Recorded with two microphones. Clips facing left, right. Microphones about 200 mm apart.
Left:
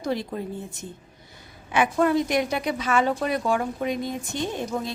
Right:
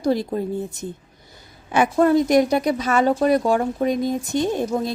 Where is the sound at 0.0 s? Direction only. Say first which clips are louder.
Right 7 dB; 35° right (ahead or behind).